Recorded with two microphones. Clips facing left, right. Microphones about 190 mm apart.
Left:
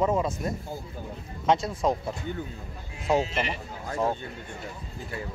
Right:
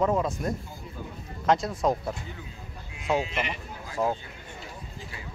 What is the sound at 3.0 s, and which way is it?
Speech, 40° left (ahead or behind).